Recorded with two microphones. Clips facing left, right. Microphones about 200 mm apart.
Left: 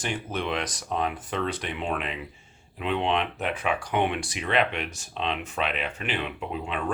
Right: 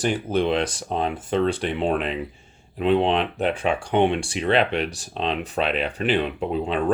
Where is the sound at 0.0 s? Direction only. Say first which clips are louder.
Right 8 dB; 35° right (ahead or behind).